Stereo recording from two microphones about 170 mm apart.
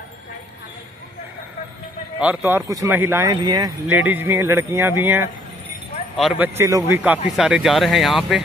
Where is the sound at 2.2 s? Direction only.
10° right (ahead or behind).